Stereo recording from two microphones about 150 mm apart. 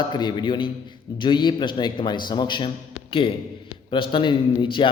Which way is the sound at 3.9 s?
35° left (ahead or behind).